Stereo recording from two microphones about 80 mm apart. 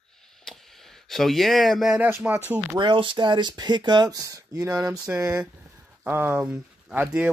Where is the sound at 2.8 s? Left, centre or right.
Right.